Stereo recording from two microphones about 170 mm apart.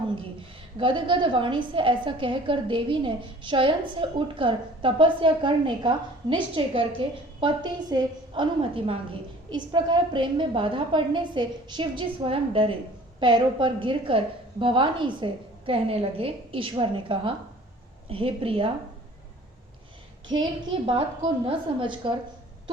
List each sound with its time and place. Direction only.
0.8 s a woman's voice: 30° right (ahead or behind)
20.3 s a woman's voice: 25° right (ahead or behind)